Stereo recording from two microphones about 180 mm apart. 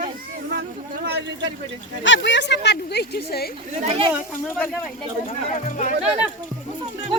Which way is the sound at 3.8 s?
30° right (ahead or behind).